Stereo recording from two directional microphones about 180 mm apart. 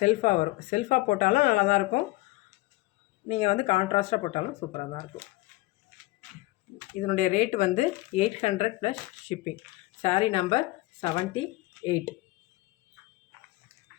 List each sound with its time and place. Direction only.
0.0 s speech: 40° left (ahead or behind)
3.2 s speech: 35° left (ahead or behind)
7.1 s speech: 45° left (ahead or behind)